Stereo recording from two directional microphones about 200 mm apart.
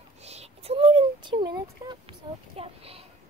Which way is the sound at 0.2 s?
30° right (ahead or behind).